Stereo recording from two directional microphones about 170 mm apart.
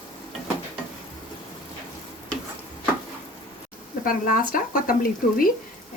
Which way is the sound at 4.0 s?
55° left (ahead or behind).